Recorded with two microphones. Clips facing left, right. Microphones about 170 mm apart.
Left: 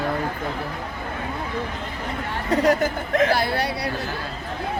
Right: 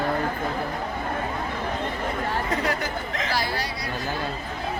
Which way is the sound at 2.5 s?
40° left (ahead or behind).